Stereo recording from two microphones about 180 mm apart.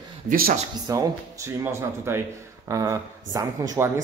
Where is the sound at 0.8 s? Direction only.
15° right (ahead or behind).